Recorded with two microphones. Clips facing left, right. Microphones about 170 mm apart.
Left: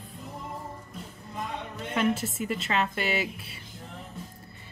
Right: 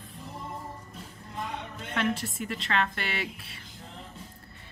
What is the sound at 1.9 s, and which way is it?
A woman's voice, 5° left (ahead or behind).